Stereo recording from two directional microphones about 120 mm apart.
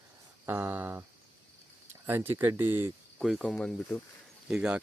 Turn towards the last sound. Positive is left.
turn(degrees=-5)  # may be behind; listen again after turning